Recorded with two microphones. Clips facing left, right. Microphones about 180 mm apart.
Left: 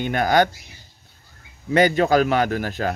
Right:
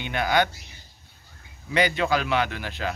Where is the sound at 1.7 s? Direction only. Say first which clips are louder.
Left 7 dB; 45° left (ahead or behind).